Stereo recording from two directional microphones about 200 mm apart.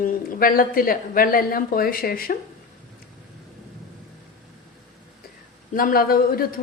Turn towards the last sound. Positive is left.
turn(degrees=45)  # may be behind; listen again after turning